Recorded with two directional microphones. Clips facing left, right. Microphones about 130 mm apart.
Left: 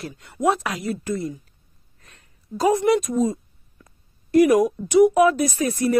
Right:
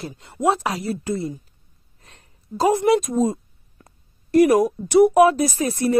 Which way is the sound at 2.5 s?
30° right (ahead or behind).